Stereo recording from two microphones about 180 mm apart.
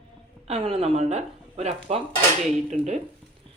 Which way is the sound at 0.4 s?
35° right (ahead or behind).